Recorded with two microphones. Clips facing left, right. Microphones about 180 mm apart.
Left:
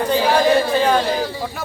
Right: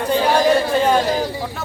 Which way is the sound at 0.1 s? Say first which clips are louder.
Right 1 dB; 5° left (ahead or behind).